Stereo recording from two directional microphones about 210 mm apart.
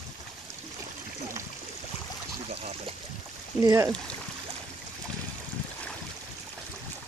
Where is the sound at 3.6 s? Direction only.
15° right (ahead or behind).